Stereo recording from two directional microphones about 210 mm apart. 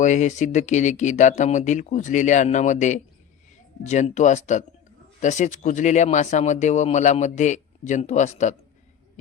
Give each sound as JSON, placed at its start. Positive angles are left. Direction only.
{"t": 0.0, "sound": "speech", "side_deg": 35}